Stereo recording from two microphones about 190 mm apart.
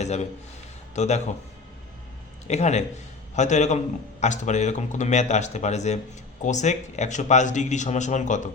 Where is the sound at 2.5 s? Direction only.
35° left (ahead or behind).